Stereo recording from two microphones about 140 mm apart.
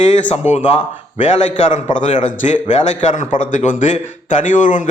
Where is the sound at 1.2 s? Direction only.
55° left (ahead or behind).